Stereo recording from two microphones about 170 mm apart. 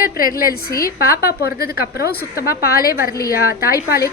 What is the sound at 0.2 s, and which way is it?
Speech, 55° left (ahead or behind).